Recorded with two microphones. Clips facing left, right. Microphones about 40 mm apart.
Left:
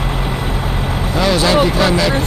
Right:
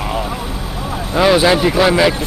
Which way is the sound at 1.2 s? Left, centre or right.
Centre.